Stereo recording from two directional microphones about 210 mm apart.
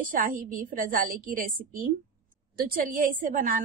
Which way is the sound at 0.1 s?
40° right (ahead or behind).